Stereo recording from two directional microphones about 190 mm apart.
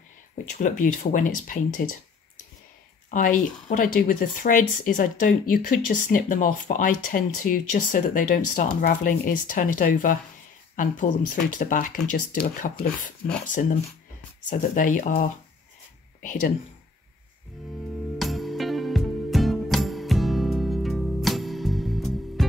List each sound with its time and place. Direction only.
0.5 s speech: 40° left (ahead or behind)
3.1 s speech: 45° left (ahead or behind)
18.2 s music: centre (ahead or behind)